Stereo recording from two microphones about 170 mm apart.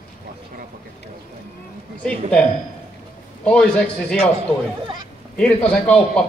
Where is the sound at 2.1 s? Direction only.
5° left (ahead or behind).